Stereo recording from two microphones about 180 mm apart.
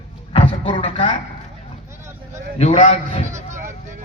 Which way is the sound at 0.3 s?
35° left (ahead or behind).